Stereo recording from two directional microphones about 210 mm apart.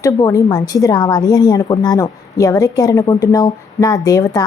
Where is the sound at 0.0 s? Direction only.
15° left (ahead or behind).